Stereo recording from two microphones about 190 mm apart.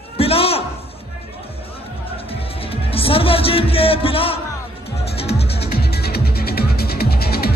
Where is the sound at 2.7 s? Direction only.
30° left (ahead or behind).